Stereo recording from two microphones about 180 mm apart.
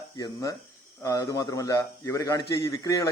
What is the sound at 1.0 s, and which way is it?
A man's voice, 20° left (ahead or behind).